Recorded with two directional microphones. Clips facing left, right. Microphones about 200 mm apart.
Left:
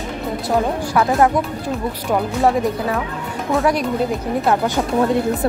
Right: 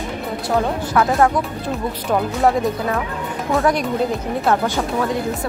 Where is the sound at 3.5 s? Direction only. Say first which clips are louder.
Even; centre (ahead or behind).